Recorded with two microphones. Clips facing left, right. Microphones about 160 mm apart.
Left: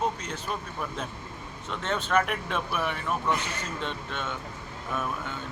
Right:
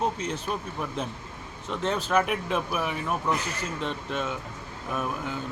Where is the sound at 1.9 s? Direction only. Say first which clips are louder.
Even; 5° right (ahead or behind).